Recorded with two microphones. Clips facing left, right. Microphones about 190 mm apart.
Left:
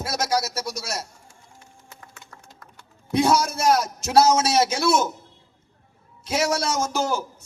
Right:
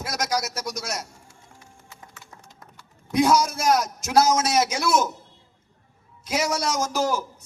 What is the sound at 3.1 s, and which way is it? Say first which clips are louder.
A man's voice: even; 30° left (ahead or behind).